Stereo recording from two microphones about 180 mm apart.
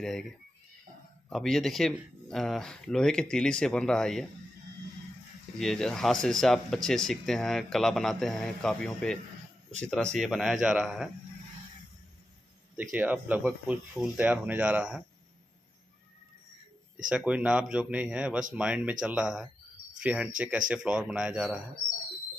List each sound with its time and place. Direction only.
0.0 s speech: centre (ahead or behind)
1.3 s speech: centre (ahead or behind)
5.6 s speech: 5° left (ahead or behind)
12.7 s speech: 10° right (ahead or behind)
17.1 s speech: 5° right (ahead or behind)